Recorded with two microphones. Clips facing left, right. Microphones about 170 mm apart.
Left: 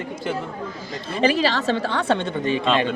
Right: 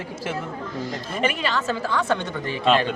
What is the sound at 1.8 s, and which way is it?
Speech, 70° left (ahead or behind).